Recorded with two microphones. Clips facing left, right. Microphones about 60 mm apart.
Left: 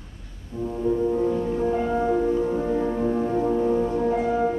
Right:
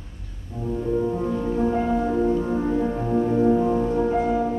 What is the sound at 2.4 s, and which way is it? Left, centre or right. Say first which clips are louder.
Music: even; centre.